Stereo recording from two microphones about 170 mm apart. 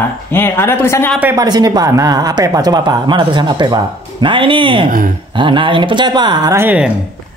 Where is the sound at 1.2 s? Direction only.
20° right (ahead or behind).